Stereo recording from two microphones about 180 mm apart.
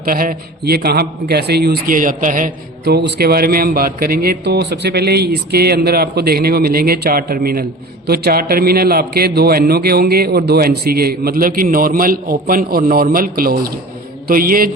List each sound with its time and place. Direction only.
0.0 s a man's voice: 55° right (ahead or behind)